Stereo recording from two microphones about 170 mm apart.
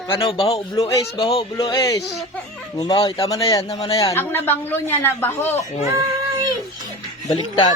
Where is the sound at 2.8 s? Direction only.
25° left (ahead or behind).